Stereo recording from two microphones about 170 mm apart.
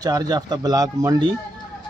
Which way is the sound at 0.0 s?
25° right (ahead or behind).